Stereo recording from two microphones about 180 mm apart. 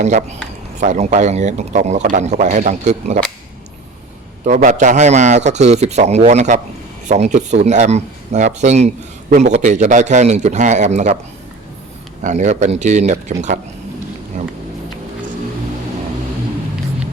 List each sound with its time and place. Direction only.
0.0 s a man's voice: 40° right (ahead or behind)
4.4 s a man's voice: 45° right (ahead or behind)
12.2 s a man's voice: 45° right (ahead or behind)